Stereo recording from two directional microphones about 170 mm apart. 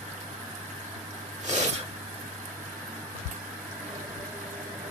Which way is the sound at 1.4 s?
45° right (ahead or behind).